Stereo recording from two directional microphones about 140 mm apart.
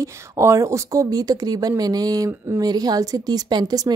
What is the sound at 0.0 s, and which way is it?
A woman's voice, 20° right (ahead or behind).